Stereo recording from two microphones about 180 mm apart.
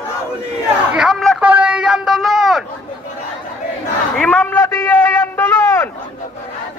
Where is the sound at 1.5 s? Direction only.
5° right (ahead or behind).